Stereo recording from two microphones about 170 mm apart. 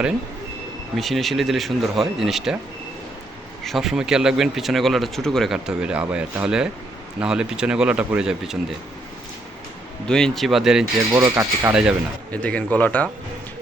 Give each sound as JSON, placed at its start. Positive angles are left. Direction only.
{"t": 0.9, "sound": "speech", "side_deg": 0}
{"t": 3.6, "sound": "speech", "side_deg": 0}
{"t": 10.1, "sound": "speech", "side_deg": 5}
{"t": 12.3, "sound": "speech", "side_deg": 10}